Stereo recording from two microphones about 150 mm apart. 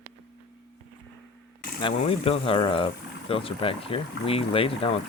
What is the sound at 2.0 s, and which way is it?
Speech, 40° left (ahead or behind).